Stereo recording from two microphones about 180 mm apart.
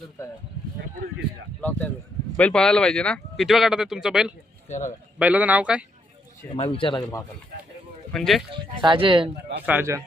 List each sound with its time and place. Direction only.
2.3 s speech: 5° left (ahead or behind)
4.7 s speech: 40° left (ahead or behind)
5.2 s speech: 10° right (ahead or behind)
6.6 s speech: 30° left (ahead or behind)
8.1 s speech: centre (ahead or behind)
8.5 s speech: 25° right (ahead or behind)
9.6 s speech: 15° right (ahead or behind)